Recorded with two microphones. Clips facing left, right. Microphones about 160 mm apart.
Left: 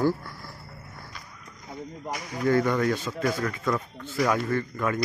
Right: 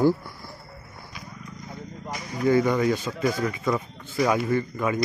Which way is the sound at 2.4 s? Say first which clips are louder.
Right 2 dB; 5° right (ahead or behind).